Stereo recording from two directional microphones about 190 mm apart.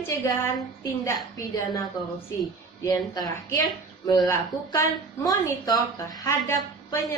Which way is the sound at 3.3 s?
15° left (ahead or behind).